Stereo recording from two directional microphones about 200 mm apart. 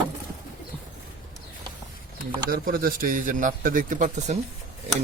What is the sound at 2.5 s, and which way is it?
A man's voice, 45° right (ahead or behind).